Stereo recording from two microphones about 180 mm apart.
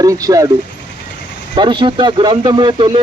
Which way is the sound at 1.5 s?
25° right (ahead or behind).